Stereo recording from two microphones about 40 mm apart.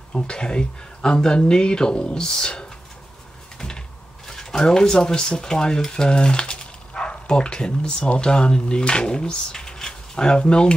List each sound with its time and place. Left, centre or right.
0.1 s speech: left
3.5 s a sound: centre
4.3 s speech: centre